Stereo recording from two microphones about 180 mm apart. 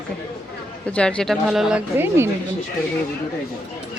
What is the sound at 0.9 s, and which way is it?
Speech, 5° left (ahead or behind).